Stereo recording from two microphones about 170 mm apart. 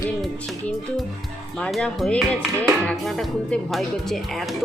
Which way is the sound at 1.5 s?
5° left (ahead or behind).